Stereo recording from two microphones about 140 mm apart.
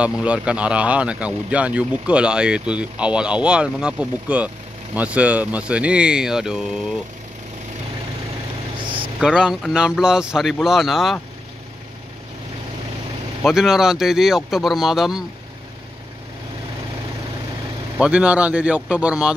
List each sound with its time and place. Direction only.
0.0 s speech: 10° right (ahead or behind)
8.8 s vehicle: 40° right (ahead or behind)
9.2 s speech: 5° right (ahead or behind)
13.4 s speech: centre (ahead or behind)
17.9 s speech: 10° right (ahead or behind)